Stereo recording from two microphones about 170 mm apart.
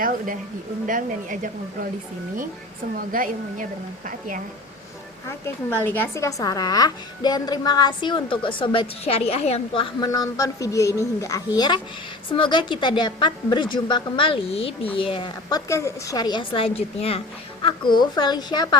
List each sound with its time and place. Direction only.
0.9 s a woman's voice: 50° right (ahead or behind)
2.9 s a woman's voice: 55° right (ahead or behind)
5.7 s a woman's voice: 10° left (ahead or behind)